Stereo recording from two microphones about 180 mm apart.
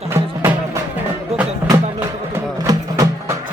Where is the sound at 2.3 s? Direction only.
15° right (ahead or behind).